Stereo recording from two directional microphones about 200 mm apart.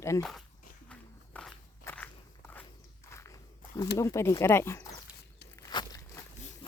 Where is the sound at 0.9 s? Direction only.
5° left (ahead or behind).